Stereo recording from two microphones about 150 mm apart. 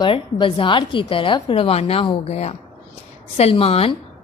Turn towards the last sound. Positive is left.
turn(degrees=40)  # may be behind; listen again after turning